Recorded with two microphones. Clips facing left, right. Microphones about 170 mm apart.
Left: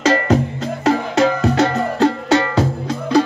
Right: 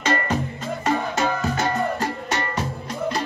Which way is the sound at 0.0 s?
80° left.